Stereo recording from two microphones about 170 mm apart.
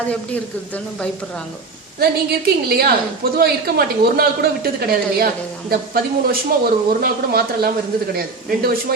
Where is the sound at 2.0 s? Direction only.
65° right (ahead or behind).